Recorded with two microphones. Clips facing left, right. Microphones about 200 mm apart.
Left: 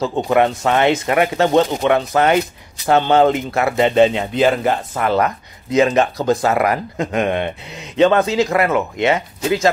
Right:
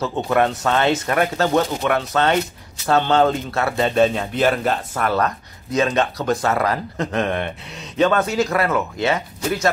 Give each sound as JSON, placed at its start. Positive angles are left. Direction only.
{"t": 0.0, "sound": "speech", "side_deg": 15}
{"t": 7.7, "sound": "speech", "side_deg": 90}
{"t": 8.0, "sound": "speech", "side_deg": 20}